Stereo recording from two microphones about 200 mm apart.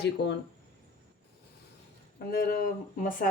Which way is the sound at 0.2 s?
60° left (ahead or behind).